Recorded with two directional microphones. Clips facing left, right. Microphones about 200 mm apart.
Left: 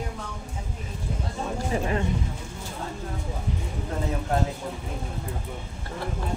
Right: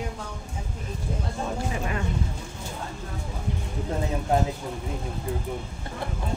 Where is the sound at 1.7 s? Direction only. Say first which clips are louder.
Left 4 dB; 30° left (ahead or behind).